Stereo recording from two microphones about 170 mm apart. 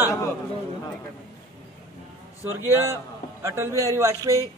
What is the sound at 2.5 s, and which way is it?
A man's voice, 15° right (ahead or behind).